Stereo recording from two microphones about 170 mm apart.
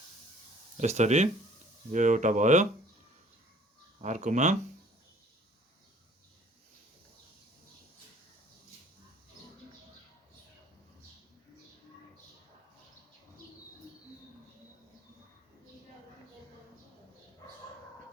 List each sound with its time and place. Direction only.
0.8 s speech: 45° right (ahead or behind)
4.0 s speech: 45° right (ahead or behind)